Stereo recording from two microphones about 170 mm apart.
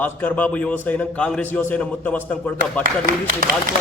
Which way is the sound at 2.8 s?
55° right (ahead or behind).